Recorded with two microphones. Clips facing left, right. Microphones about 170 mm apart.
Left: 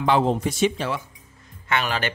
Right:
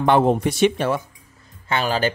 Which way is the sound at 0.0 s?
55° right (ahead or behind).